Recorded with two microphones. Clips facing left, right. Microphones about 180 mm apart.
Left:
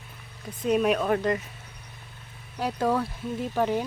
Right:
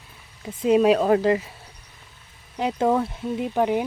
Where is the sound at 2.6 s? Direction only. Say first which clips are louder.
Right 4 dB; 20° right (ahead or behind).